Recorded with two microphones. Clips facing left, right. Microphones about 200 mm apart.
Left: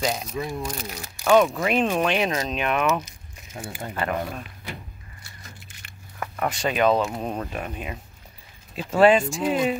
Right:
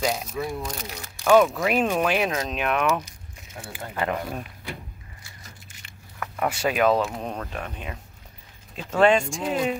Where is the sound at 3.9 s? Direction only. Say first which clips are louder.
Even; 15° right (ahead or behind).